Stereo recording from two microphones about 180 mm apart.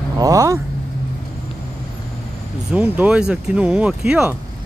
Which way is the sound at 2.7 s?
10° right (ahead or behind).